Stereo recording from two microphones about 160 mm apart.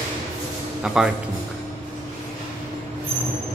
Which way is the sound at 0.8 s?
5° right (ahead or behind).